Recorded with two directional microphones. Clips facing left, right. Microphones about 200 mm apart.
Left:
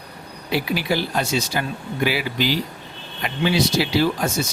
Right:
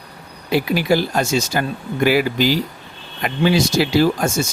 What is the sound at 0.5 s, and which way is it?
Speech, 45° right (ahead or behind).